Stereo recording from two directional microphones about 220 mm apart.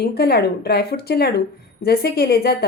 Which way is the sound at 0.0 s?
45° left (ahead or behind).